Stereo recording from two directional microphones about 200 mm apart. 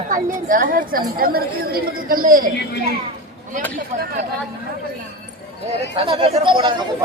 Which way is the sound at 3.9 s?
35° right (ahead or behind).